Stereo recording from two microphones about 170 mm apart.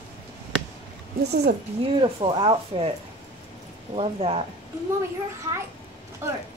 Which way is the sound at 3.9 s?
35° right (ahead or behind).